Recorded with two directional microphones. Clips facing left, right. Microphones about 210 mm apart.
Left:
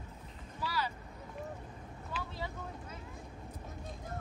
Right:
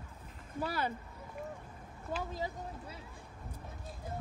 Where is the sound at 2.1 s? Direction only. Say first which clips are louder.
Right 4 dB; 45° right (ahead or behind).